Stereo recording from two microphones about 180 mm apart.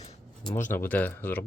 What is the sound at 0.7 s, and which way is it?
Speech, 10° left (ahead or behind).